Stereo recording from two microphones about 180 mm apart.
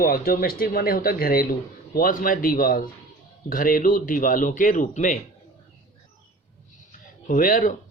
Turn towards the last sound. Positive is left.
turn(degrees=50)  # may be behind; listen again after turning